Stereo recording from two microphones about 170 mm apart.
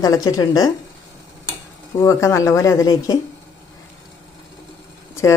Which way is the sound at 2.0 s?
15° left (ahead or behind).